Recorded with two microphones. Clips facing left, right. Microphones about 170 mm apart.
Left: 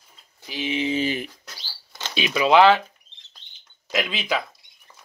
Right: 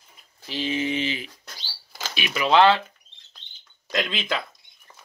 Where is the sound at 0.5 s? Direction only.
15° left (ahead or behind).